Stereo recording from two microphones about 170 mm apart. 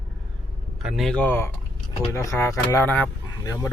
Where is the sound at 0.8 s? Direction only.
Centre (ahead or behind); by 3.7 s 15° left (ahead or behind).